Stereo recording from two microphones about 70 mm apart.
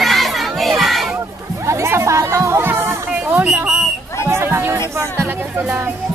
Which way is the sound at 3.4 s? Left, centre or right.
Centre.